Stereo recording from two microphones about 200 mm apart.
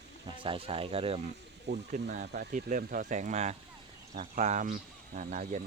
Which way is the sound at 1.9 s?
45° right (ahead or behind).